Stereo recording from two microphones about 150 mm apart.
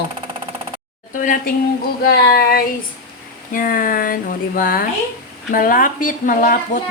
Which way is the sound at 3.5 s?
65° left (ahead or behind).